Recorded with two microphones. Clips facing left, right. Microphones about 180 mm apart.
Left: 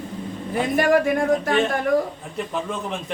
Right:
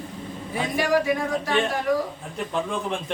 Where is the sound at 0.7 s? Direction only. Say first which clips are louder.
Left 3 dB; 55° left (ahead or behind).